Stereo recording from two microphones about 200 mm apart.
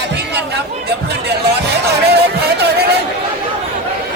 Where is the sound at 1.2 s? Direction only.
55° right (ahead or behind).